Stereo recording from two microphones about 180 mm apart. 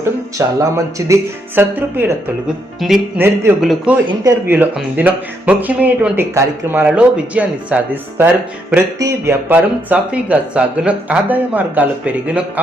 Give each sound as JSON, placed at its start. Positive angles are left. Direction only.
{"t": 0.0, "sound": "speech", "side_deg": -20}
{"t": 3.6, "sound": "speech", "side_deg": 0}
{"t": 4.2, "sound": "speech", "side_deg": -15}
{"t": 9.0, "sound": "speech", "side_deg": -15}